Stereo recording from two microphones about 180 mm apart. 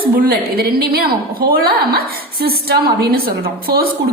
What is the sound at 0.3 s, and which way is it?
A woman's voice, 60° right (ahead or behind).